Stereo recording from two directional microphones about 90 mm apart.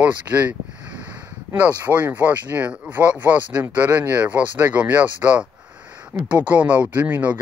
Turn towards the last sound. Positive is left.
turn(degrees=-20)  # may be behind; listen again after turning